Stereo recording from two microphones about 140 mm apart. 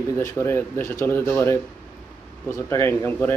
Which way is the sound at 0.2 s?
20° left (ahead or behind).